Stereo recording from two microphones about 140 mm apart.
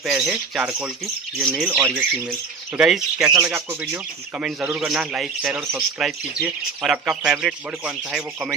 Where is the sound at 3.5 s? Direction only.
20° right (ahead or behind).